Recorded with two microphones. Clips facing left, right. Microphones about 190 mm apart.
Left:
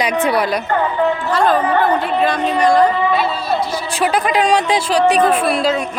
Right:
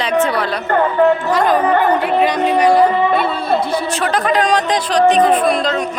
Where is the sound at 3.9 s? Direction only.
10° left (ahead or behind).